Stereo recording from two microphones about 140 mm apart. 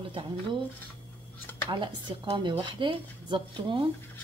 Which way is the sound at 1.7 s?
35° right (ahead or behind).